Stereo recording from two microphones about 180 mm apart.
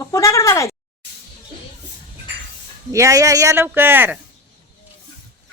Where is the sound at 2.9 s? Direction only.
15° right (ahead or behind).